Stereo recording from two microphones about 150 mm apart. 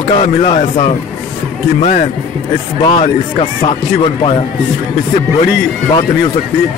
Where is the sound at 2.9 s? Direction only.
35° left (ahead or behind).